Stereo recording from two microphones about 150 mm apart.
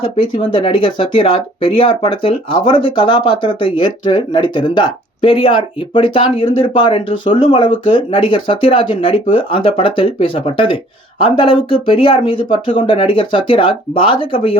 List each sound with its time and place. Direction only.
0.0 s speech: 35° left (ahead or behind)